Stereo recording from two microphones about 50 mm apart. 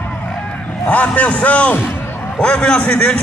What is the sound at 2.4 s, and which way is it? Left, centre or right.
Speech, centre.